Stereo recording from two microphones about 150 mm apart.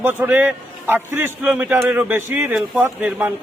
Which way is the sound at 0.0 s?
10° right (ahead or behind).